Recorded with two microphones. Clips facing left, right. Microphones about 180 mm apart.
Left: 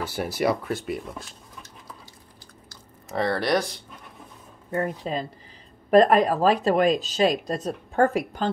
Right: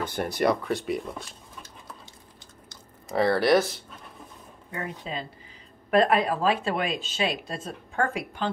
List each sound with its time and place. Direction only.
0.0 s speech: 5° left (ahead or behind)
3.1 s speech: centre (ahead or behind)
4.6 s speech: 45° left (ahead or behind)